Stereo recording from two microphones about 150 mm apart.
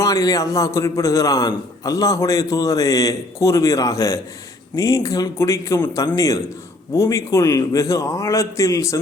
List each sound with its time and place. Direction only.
0.0 s a man's voice: 20° left (ahead or behind)